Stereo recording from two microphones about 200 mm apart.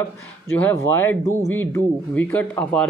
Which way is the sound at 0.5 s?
10° left (ahead or behind).